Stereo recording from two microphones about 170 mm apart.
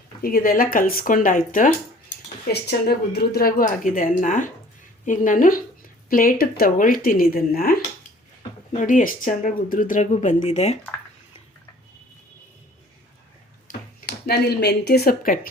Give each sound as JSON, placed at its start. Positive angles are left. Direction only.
{"t": 0.2, "sound": "speech", "side_deg": 60}
{"t": 2.5, "sound": "speech", "side_deg": 70}
{"t": 8.7, "sound": "speech", "side_deg": 50}
{"t": 14.1, "sound": "speech", "side_deg": 70}